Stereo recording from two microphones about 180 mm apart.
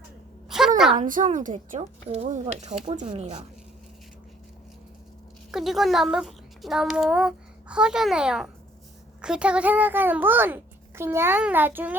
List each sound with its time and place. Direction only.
0.9 s a woman's voice: 50° right (ahead or behind)
2.0 s speech: 35° right (ahead or behind)
3.1 s speech: 30° right (ahead or behind)
5.5 s a child's voice: centre (ahead or behind)